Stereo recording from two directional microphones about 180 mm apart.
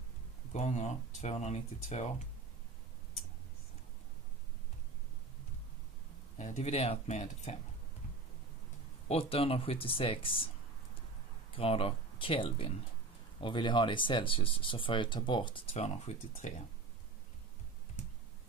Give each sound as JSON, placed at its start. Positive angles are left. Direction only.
{"t": 0.5, "sound": "speech", "side_deg": 40}
{"t": 6.3, "sound": "speech", "side_deg": 40}
{"t": 9.1, "sound": "speech", "side_deg": 35}
{"t": 11.5, "sound": "speech", "side_deg": 30}